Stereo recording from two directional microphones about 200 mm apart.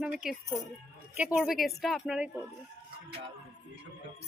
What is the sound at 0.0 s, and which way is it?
A woman's voice, 5° right (ahead or behind).